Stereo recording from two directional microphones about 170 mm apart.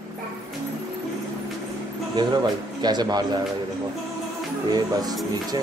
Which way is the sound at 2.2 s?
25° right (ahead or behind).